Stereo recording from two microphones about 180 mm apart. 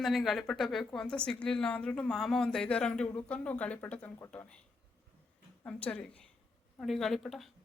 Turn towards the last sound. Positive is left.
turn(degrees=0)  # may be behind; listen again after turning